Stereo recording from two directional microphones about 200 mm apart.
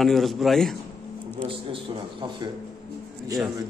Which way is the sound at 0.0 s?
Centre (ahead or behind).